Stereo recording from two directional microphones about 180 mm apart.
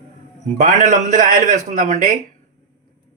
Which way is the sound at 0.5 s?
40° right (ahead or behind).